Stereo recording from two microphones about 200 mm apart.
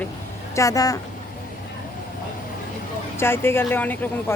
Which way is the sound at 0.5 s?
15° left (ahead or behind).